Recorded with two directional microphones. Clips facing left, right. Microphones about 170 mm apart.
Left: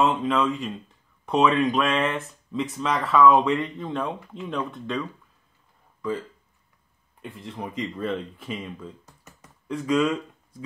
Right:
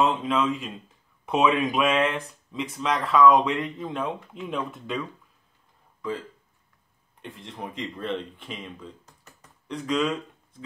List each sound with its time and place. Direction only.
0.0 s speech: centre (ahead or behind)
7.2 s speech: centre (ahead or behind)